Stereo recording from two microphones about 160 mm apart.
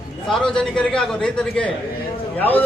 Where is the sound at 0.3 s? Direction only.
5° left (ahead or behind).